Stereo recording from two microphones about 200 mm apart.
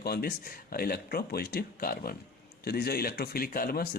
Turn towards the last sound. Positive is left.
turn(degrees=45)  # may be behind; listen again after turning